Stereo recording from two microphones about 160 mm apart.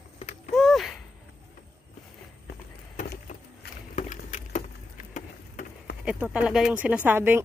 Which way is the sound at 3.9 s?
55° left (ahead or behind).